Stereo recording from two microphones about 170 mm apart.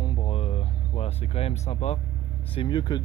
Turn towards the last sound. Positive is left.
turn(degrees=25)  # may be behind; listen again after turning